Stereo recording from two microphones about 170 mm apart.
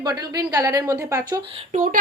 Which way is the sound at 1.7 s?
50° right (ahead or behind).